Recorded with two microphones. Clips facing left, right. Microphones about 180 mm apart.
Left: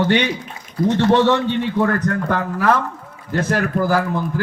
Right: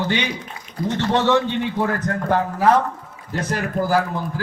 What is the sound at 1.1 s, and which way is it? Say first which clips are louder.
Speech: even; 65° left (ahead or behind).